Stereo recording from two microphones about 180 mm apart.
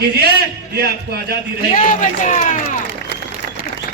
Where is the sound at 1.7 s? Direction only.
45° left (ahead or behind).